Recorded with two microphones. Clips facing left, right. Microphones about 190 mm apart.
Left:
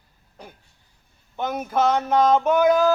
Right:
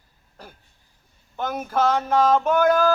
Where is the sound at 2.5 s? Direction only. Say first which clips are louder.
Left 1 dB; 10° left (ahead or behind).